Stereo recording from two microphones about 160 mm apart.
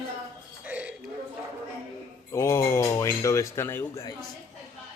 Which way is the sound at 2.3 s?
15° left (ahead or behind).